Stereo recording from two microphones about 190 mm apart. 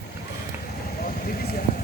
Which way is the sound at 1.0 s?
50° left (ahead or behind).